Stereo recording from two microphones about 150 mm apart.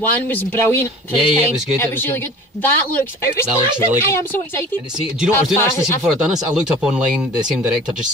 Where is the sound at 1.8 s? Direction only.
15° left (ahead or behind).